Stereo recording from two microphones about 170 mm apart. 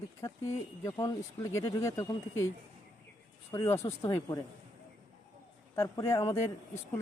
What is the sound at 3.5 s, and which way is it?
Speech, 15° left (ahead or behind).